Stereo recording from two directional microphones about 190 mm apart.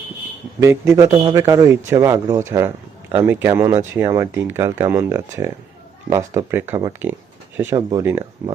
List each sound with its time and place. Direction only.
0.6 s speech: 15° right (ahead or behind)
1.1 s a man's voice: 25° right (ahead or behind)